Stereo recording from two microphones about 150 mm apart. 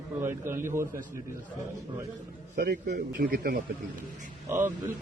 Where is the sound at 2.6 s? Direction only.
80° right.